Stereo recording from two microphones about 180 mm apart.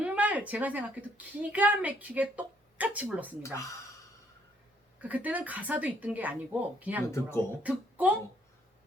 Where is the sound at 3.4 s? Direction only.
15° left (ahead or behind).